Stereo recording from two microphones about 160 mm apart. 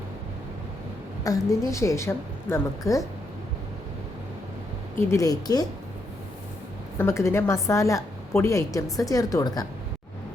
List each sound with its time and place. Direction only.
1.2 s a woman's voice: 20° left (ahead or behind)
4.9 s a woman's voice: 20° left (ahead or behind)
7.0 s a woman's voice: 15° left (ahead or behind)